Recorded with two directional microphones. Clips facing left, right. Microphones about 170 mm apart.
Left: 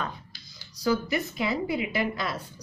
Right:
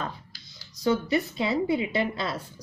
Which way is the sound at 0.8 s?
25° right (ahead or behind).